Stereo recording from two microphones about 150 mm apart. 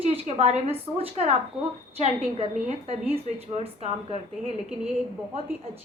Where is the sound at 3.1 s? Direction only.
40° right (ahead or behind).